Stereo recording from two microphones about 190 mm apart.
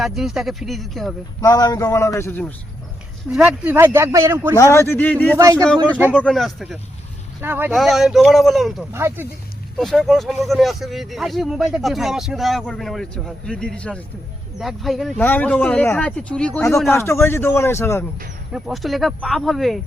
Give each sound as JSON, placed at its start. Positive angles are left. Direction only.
{"t": 0.0, "sound": "speech", "side_deg": 0}
{"t": 1.4, "sound": "speech", "side_deg": 20}
{"t": 3.2, "sound": "speech", "side_deg": -5}
{"t": 4.5, "sound": "speech", "side_deg": 15}
{"t": 5.4, "sound": "speech", "side_deg": -15}
{"t": 5.6, "sound": "speech", "side_deg": 5}
{"t": 7.4, "sound": "speech", "side_deg": -10}
{"t": 7.7, "sound": "speech", "side_deg": 0}
{"t": 8.9, "sound": "speech", "side_deg": -10}
{"t": 9.7, "sound": "speech", "side_deg": 0}
{"t": 18.5, "sound": "speech", "side_deg": 0}